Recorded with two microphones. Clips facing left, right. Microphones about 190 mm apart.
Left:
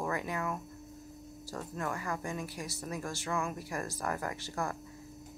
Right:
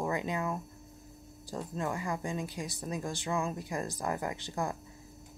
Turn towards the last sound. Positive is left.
turn(degrees=-15)  # may be behind; listen again after turning